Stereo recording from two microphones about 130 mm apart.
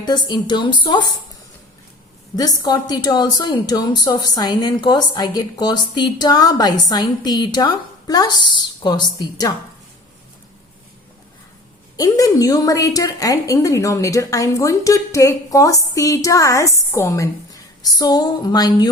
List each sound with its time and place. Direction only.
0.0 s a woman's voice: 35° left (ahead or behind)
2.3 s a woman's voice: 30° left (ahead or behind)
11.9 s a woman's voice: 30° left (ahead or behind)